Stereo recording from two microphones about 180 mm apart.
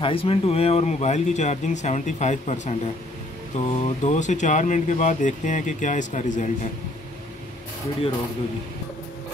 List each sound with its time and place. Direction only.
0.0 s speech: 30° left (ahead or behind)